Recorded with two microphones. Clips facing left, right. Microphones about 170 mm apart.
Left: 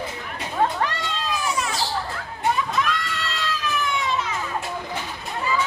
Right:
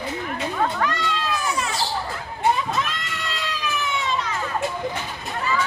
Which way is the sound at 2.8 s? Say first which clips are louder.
Left 3 dB; 25° right (ahead or behind).